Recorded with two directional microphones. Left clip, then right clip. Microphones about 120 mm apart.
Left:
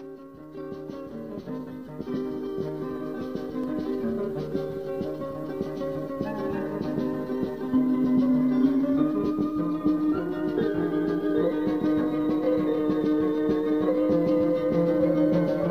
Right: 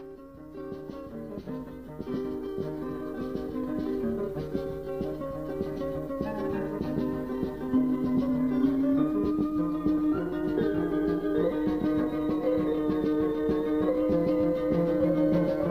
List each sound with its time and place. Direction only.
2.1 s music: 35° right (ahead or behind)